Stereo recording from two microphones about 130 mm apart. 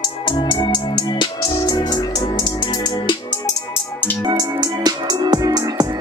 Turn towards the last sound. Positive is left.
turn(degrees=-30)  # may be behind; listen again after turning